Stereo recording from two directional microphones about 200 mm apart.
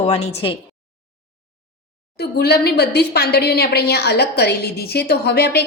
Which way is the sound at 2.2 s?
55° left (ahead or behind).